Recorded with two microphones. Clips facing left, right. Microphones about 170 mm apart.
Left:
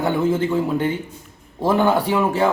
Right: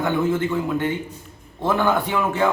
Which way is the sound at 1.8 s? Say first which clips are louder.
Left 3 dB; 35° left (ahead or behind).